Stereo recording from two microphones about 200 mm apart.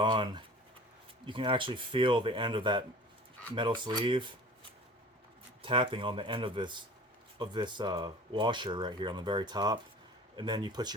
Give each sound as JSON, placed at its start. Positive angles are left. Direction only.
{"t": 0.0, "sound": "speech", "side_deg": -25}
{"t": 5.6, "sound": "speech", "side_deg": -25}